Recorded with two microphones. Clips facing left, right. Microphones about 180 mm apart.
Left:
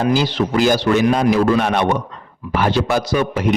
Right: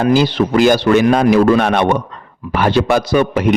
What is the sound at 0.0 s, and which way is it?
A man's voice, 60° right (ahead or behind).